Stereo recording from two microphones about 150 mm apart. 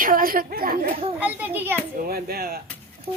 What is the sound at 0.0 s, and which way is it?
Speech, 70° right (ahead or behind).